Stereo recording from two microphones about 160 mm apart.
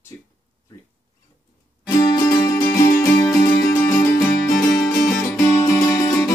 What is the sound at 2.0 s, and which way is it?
Music, 25° left (ahead or behind).